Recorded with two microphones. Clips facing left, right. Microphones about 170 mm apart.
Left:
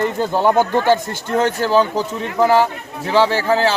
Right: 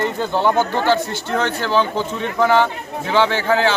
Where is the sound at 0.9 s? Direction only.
45° left (ahead or behind).